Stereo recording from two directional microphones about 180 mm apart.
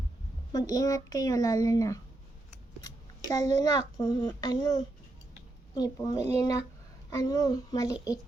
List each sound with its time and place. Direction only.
0.5 s speech: 20° left (ahead or behind)
3.2 s a child's voice: 20° left (ahead or behind)